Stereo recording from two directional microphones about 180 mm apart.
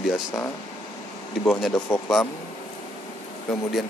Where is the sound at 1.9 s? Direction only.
15° left (ahead or behind).